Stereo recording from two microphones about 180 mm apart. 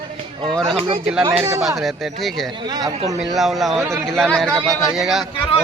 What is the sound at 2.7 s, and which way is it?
Speech, 20° right (ahead or behind).